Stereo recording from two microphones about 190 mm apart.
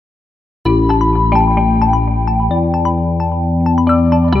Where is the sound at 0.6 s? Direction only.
Centre (ahead or behind).